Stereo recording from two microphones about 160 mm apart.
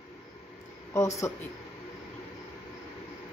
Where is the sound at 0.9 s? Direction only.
20° left (ahead or behind).